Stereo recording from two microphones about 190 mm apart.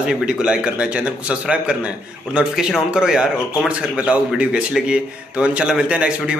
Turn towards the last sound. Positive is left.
turn(degrees=-5)  # may be behind; listen again after turning